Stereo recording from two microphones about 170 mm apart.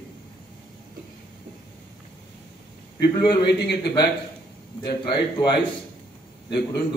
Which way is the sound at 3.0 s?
75° left (ahead or behind).